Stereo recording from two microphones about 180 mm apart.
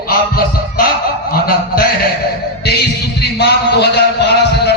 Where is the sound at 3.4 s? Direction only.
65° left (ahead or behind).